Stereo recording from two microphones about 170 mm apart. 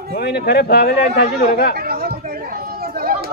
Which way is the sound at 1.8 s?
65° right (ahead or behind).